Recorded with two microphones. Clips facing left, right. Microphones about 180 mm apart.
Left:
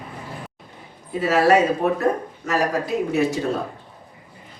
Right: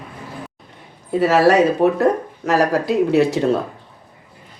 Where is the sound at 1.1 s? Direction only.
75° right (ahead or behind).